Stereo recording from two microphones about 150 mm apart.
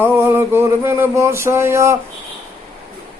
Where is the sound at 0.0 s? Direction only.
15° right (ahead or behind).